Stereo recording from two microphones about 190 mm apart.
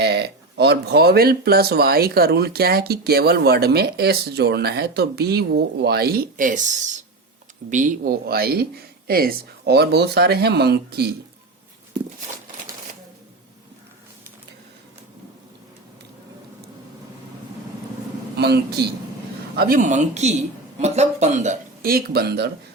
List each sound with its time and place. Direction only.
0.0 s speech: 60° right (ahead or behind)
18.3 s speech: 60° right (ahead or behind)